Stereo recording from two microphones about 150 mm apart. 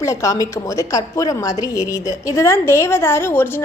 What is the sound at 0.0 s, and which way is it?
A woman's voice, 20° left (ahead or behind).